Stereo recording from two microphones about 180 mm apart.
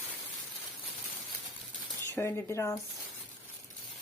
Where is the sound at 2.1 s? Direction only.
15° left (ahead or behind).